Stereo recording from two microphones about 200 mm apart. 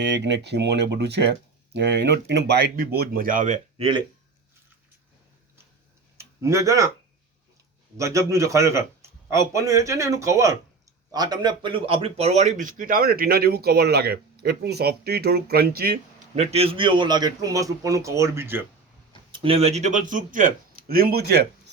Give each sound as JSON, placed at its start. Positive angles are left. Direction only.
{"t": 0.0, "sound": "speech", "side_deg": -60}
{"t": 6.1, "sound": "speech", "side_deg": -15}
{"t": 7.9, "sound": "a man's voice", "side_deg": -15}
{"t": 16.3, "sound": "a man's voice", "side_deg": -30}
{"t": 19.3, "sound": "a man's voice", "side_deg": -25}